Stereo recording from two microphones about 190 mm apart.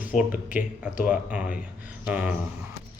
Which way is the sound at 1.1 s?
5° right (ahead or behind).